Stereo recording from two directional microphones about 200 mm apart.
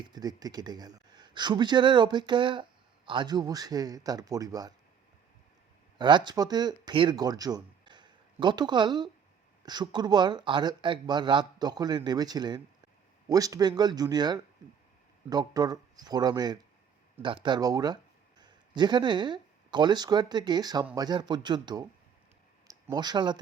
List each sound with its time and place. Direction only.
0.0 s speech: 20° right (ahead or behind)
6.0 s speech: 20° right (ahead or behind)